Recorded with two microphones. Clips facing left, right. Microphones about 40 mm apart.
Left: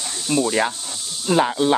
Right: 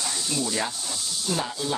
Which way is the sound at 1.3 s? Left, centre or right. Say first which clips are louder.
Left 12 dB; left.